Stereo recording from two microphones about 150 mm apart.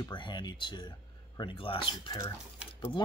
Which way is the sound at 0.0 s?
30° left (ahead or behind).